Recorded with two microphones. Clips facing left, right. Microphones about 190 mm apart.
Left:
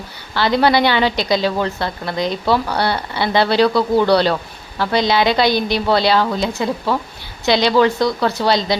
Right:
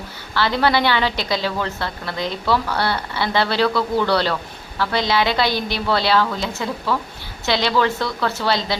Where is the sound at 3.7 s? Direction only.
35° left (ahead or behind).